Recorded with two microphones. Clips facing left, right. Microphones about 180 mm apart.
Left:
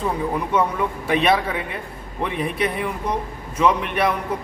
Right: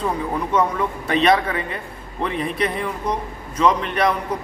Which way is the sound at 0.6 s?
5° left (ahead or behind).